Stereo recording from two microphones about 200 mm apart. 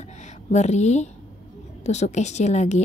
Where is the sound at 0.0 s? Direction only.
35° left (ahead or behind).